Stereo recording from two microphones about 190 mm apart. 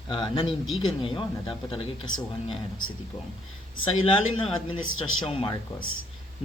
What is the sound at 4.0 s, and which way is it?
Speech, 30° left (ahead or behind).